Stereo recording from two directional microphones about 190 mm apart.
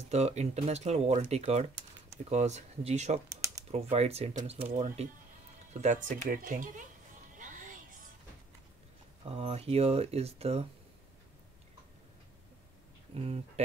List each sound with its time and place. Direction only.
0.1 s speech: 35° right (ahead or behind)
3.3 s typing: 15° right (ahead or behind)
3.7 s speech: 35° right (ahead or behind)
7.3 s music: 45° right (ahead or behind)
9.2 s speech: 30° right (ahead or behind)
13.1 s speech: 30° right (ahead or behind)